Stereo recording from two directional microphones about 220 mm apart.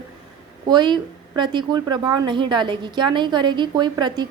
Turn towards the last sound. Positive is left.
turn(degrees=-20)  # may be behind; listen again after turning